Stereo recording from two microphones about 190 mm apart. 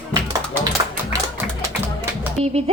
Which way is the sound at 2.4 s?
35° right (ahead or behind).